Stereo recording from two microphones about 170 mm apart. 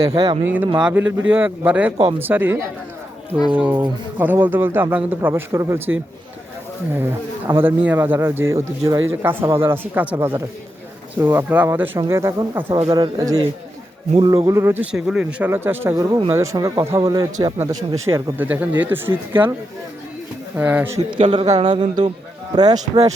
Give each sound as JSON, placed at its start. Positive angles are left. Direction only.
{"t": 0.1, "sound": "speech", "side_deg": -30}
{"t": 0.4, "sound": "speech", "side_deg": -10}
{"t": 6.9, "sound": "speech", "side_deg": -10}
{"t": 20.6, "sound": "speech", "side_deg": -10}
{"t": 21.6, "sound": "speech", "side_deg": -25}